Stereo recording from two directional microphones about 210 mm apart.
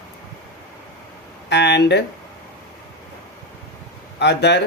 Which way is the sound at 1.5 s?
55° left (ahead or behind).